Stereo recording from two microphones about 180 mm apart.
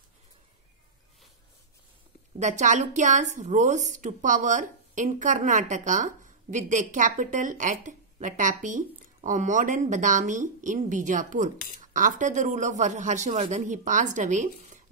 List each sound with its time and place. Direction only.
2.3 s a woman's voice: 40° right (ahead or behind)